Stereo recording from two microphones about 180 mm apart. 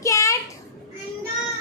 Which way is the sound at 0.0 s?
15° left (ahead or behind).